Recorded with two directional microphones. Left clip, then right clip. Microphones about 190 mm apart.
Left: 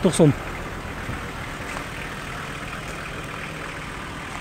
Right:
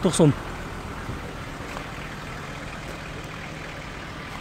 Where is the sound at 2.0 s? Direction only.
50° left (ahead or behind).